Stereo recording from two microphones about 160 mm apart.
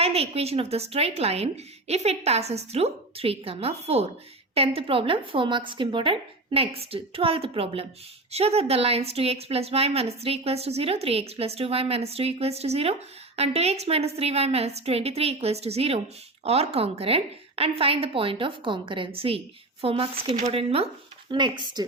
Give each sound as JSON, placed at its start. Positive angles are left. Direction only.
{"t": 0.0, "sound": "a woman's voice", "side_deg": -40}